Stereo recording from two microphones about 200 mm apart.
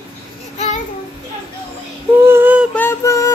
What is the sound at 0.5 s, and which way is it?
Child singing, 30° left (ahead or behind).